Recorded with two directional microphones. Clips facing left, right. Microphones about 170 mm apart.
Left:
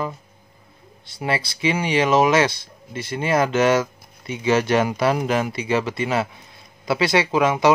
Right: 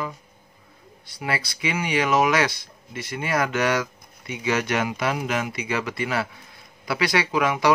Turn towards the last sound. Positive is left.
turn(degrees=25)  # may be behind; listen again after turning